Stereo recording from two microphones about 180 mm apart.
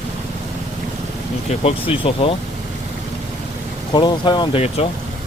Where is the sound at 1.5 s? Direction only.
30° left (ahead or behind).